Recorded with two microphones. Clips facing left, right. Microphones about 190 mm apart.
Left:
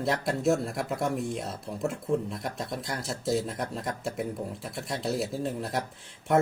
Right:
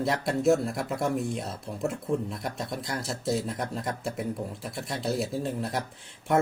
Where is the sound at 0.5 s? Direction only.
40° right (ahead or behind).